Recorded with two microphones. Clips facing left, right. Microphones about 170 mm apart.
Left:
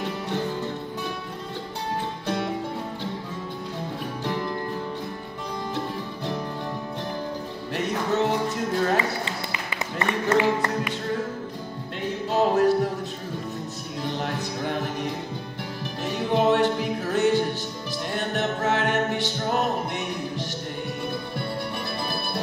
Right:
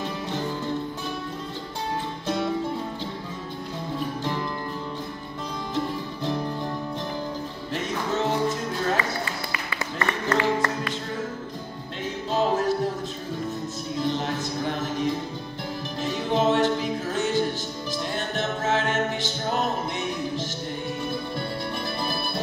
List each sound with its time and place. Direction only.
7.7 s music: 60° left (ahead or behind)
8.9 s music: 20° left (ahead or behind)
12.3 s music: 65° left (ahead or behind)
16.0 s music: 60° left (ahead or behind)